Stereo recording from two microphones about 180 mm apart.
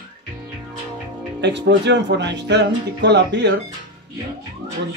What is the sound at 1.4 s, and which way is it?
Speech, 75° right (ahead or behind).